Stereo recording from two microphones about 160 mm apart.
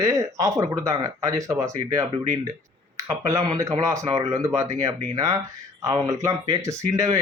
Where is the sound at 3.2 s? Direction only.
20° right (ahead or behind).